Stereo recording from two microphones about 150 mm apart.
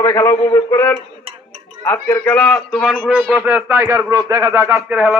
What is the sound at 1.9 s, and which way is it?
Speech, 20° left (ahead or behind).